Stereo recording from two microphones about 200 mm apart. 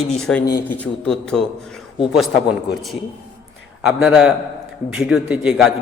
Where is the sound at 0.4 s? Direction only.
20° left (ahead or behind).